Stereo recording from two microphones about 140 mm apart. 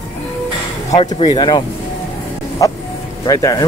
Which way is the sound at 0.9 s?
30° left (ahead or behind).